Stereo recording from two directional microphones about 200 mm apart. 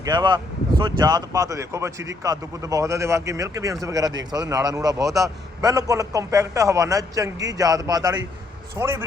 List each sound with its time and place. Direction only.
0.0 s speech: 20° right (ahead or behind)